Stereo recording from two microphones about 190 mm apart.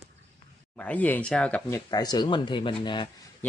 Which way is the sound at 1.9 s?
20° left (ahead or behind).